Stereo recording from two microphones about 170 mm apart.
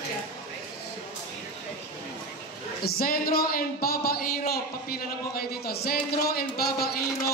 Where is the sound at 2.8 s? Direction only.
60° left (ahead or behind).